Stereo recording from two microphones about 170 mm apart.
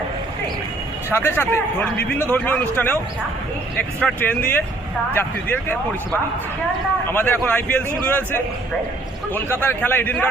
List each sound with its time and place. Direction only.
1.1 s a man's voice: 15° left (ahead or behind)
7.1 s a man's voice: 10° left (ahead or behind)